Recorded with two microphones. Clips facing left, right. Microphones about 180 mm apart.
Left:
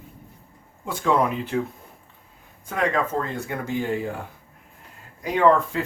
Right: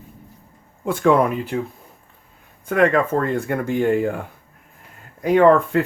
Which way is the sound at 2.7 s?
60° right (ahead or behind).